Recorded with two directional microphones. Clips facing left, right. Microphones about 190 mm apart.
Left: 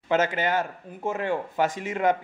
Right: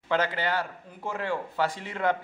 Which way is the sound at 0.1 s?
20° left (ahead or behind).